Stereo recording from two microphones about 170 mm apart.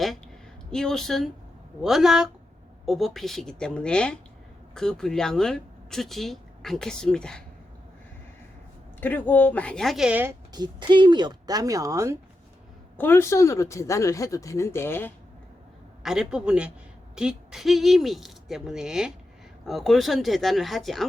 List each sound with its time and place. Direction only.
0.7 s speech: 5° left (ahead or behind)
9.0 s speech: 10° left (ahead or behind); by 10.3 s 10° right (ahead or behind)
10.5 s speech: 25° right (ahead or behind)
13.0 s speech: 15° left (ahead or behind)
16.0 s speech: 5° right (ahead or behind)